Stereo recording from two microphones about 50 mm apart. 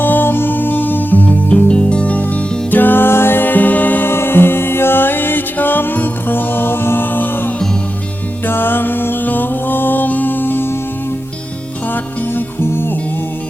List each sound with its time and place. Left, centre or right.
0.0 s music: left
1.6 s music: left
4.1 s music: left
12.3 s music: left